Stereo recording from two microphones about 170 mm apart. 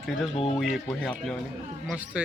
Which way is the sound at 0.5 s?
Centre (ahead or behind).